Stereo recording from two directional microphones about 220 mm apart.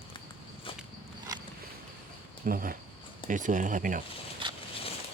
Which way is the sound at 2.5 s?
40° right (ahead or behind).